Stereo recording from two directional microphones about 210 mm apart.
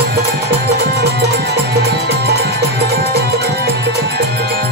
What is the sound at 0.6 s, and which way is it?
Music, 50° right (ahead or behind).